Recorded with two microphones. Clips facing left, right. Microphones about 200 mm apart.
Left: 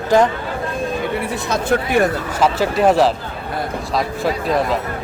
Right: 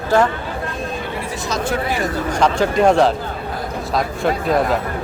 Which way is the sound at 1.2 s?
60° left (ahead or behind).